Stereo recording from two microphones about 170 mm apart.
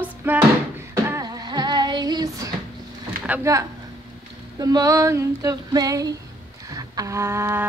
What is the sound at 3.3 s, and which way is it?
Speech, 15° right (ahead or behind).